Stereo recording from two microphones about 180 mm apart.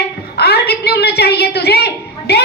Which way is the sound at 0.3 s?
65° left (ahead or behind).